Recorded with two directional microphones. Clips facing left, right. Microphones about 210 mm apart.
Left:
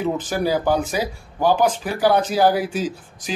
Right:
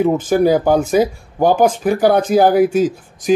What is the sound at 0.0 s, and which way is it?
Speech, 50° right (ahead or behind).